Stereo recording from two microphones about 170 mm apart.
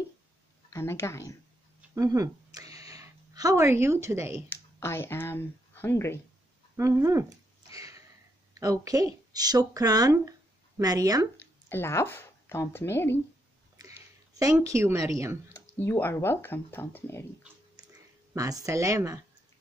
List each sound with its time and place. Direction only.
0.7 s a woman's voice: 15° left (ahead or behind)
2.0 s speech: 20° right (ahead or behind)
4.5 s speech: 15° left (ahead or behind)
6.8 s a woman's voice: 20° right (ahead or behind)
7.7 s a sound: 20° right (ahead or behind)
8.5 s speech: 20° right (ahead or behind)
11.3 s speech: 15° left (ahead or behind)
13.7 s a sound: 20° right (ahead or behind)
15.5 s speech: 15° left (ahead or behind)
18.3 s a woman's voice: 20° right (ahead or behind)